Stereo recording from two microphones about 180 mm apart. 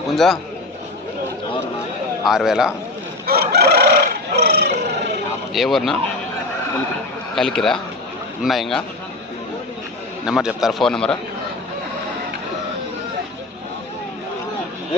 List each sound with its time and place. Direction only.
0.1 s a man's voice: centre (ahead or behind)
2.2 s a man's voice: centre (ahead or behind)
3.2 s chicken: 60° right (ahead or behind)
5.5 s a man's voice: centre (ahead or behind)
7.3 s a man's voice: centre (ahead or behind)
10.2 s a man's voice: 5° right (ahead or behind)